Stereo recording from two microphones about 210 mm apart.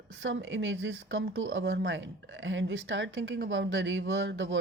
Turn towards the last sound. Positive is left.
turn(degrees=-60)  # may be behind; listen again after turning